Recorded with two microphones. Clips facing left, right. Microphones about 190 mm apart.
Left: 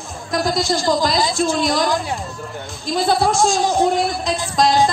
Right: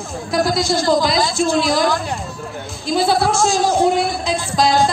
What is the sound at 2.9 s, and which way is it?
A woman's voice, 5° right (ahead or behind).